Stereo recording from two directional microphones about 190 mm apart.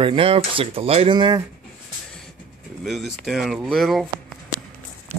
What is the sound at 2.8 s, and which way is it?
Speech, centre (ahead or behind).